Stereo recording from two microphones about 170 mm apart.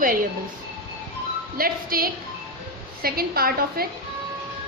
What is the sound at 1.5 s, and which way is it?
A woman's voice, 60° right (ahead or behind).